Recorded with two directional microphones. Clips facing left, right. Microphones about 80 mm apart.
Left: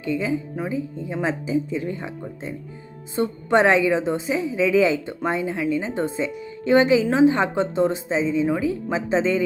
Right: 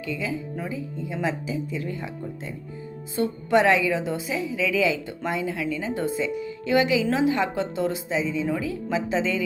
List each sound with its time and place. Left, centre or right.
0.0 s a woman's voice: left